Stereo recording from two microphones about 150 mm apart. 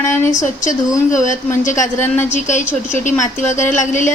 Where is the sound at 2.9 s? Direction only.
55° left (ahead or behind).